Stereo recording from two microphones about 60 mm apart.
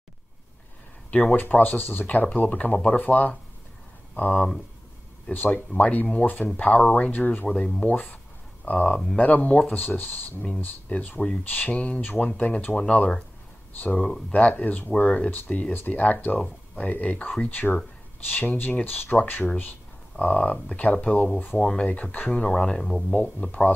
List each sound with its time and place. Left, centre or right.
1.1 s speech: left
5.3 s speech: left
8.9 s speech: centre
9.2 s speech: left
11.4 s speech: left
12.0 s speech: left
12.3 s speech: left
13.7 s speech: left
21.5 s speech: centre
21.8 s speech: left
23.1 s speech: left